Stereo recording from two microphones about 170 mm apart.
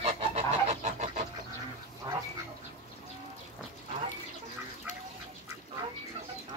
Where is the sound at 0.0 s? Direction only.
40° right (ahead or behind).